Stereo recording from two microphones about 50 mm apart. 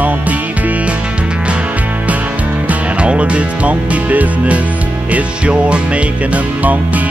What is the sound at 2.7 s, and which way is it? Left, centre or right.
Music, right.